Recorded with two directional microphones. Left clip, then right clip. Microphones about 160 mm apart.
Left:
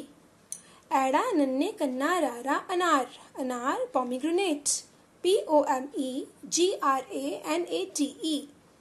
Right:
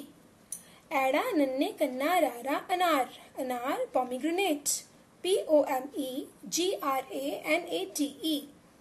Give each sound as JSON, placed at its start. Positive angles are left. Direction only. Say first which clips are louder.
{"t": 0.8, "sound": "a woman's voice", "louder": "left 3 dB", "side_deg": 40}